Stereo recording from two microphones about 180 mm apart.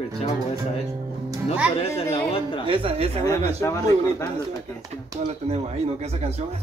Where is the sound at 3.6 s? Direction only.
15° left (ahead or behind).